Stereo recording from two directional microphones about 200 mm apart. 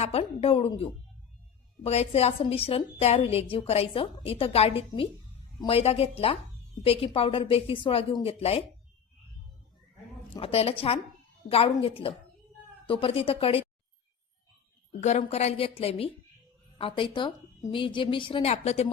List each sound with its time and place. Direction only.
0.0 s a woman's voice: 30° left (ahead or behind)
10.3 s a woman's voice: 30° left (ahead or behind)
15.0 s a woman's voice: 35° left (ahead or behind)